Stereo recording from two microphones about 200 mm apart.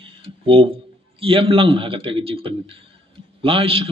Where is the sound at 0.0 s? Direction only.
25° right (ahead or behind).